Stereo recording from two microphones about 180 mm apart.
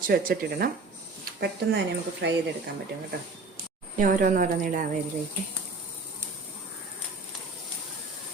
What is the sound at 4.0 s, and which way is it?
Speech, 45° right (ahead or behind).